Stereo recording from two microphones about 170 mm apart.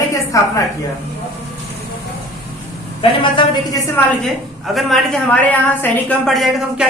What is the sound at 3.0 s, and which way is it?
Speech, 30° left (ahead or behind).